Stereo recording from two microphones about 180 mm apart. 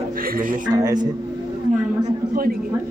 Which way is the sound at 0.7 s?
20° right (ahead or behind).